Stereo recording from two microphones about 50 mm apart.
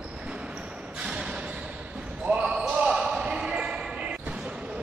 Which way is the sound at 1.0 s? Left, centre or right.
Centre.